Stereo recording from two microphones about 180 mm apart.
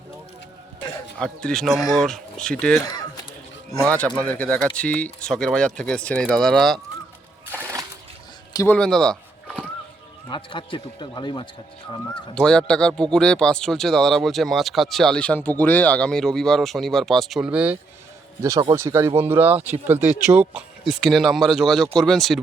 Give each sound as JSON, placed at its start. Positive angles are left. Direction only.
{"t": 1.2, "sound": "speech", "side_deg": 5}
{"t": 3.8, "sound": "speech", "side_deg": 5}
{"t": 7.5, "sound": "splash", "side_deg": -15}
{"t": 8.5, "sound": "speech", "side_deg": 10}
{"t": 10.2, "sound": "a man's voice", "side_deg": 25}
{"t": 12.3, "sound": "speech", "side_deg": 5}